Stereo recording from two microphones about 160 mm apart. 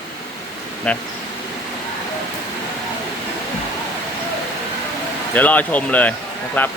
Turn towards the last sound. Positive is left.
turn(degrees=10)  # may be behind; listen again after turning